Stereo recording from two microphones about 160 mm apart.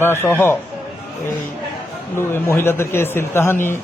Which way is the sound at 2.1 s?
15° left (ahead or behind).